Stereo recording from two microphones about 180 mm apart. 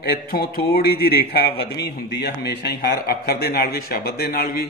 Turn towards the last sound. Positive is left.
turn(degrees=60)  # may be behind; listen again after turning